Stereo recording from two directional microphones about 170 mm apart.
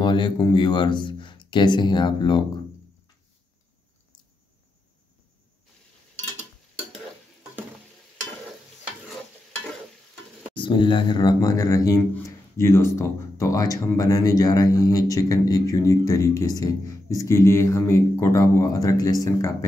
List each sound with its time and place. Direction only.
0.0 s speech: 30° left (ahead or behind)
10.5 s speech: 30° left (ahead or behind)